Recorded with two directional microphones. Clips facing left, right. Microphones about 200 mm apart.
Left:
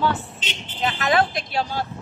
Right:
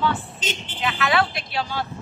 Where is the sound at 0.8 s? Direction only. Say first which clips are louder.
Left 2 dB; 40° left (ahead or behind).